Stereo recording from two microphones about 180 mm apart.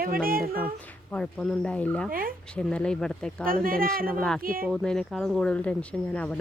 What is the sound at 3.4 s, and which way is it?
Speech, 55° right (ahead or behind).